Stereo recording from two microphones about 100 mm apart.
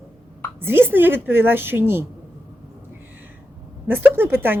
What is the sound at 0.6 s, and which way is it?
A woman's voice, 20° right (ahead or behind).